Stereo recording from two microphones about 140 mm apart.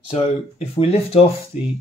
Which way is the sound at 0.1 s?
45° left (ahead or behind).